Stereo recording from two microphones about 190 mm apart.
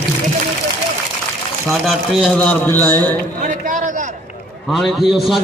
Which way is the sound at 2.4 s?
10° left (ahead or behind).